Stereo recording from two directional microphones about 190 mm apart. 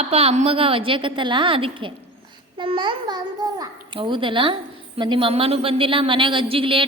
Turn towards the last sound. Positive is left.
turn(degrees=-30)  # may be behind; listen again after turning